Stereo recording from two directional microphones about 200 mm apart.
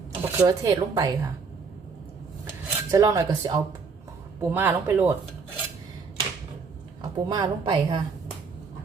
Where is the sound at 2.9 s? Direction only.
15° right (ahead or behind).